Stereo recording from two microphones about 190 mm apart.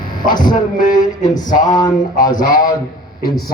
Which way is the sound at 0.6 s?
45° left (ahead or behind).